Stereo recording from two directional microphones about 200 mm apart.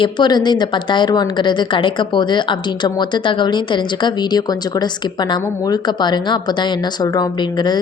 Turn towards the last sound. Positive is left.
turn(degrees=20)  # may be behind; listen again after turning